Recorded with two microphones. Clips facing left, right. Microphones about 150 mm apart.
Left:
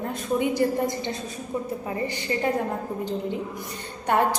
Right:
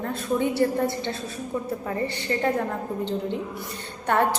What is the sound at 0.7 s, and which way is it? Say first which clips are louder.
A woman's voice: right 1 dB; 15° left (ahead or behind).